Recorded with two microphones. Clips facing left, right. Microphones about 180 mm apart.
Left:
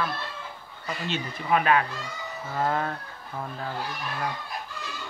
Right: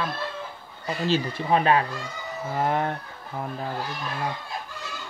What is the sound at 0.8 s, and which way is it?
Speech, 35° right (ahead or behind).